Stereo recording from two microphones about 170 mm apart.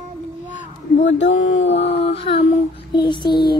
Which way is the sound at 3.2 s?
65° left (ahead or behind).